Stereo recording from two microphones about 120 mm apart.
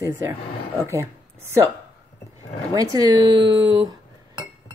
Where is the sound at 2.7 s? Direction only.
35° right (ahead or behind).